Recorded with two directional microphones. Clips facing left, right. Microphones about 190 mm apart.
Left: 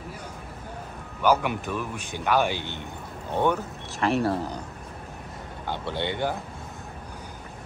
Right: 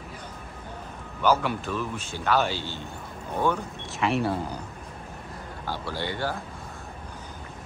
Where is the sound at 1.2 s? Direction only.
15° left (ahead or behind).